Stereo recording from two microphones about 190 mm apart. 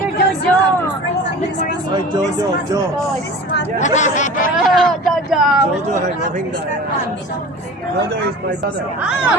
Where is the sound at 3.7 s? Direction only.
40° left (ahead or behind).